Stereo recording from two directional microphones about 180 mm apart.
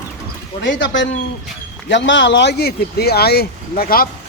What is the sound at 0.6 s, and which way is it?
Speech, 80° left.